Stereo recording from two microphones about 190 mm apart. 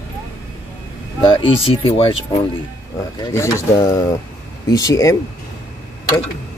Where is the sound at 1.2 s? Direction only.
25° left (ahead or behind).